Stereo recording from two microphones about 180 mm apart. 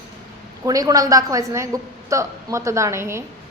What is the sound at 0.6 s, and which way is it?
A woman's voice, 20° right (ahead or behind).